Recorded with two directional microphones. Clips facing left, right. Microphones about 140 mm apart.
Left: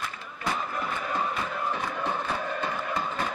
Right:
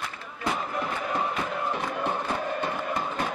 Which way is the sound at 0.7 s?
15° right (ahead or behind).